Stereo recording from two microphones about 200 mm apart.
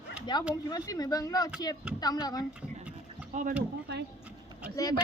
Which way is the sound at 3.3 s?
35° right (ahead or behind).